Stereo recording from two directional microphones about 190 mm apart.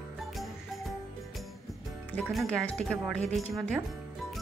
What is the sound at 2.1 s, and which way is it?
Speech, 5° left (ahead or behind).